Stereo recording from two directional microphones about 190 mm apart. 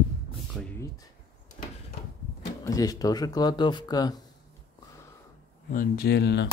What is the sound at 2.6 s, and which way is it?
Speech, 20° left (ahead or behind).